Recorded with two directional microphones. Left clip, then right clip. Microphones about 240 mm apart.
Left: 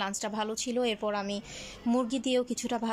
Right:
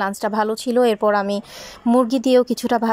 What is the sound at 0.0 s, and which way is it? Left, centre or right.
A woman's voice, centre.